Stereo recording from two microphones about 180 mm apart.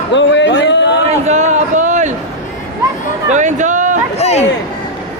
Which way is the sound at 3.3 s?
40° right (ahead or behind).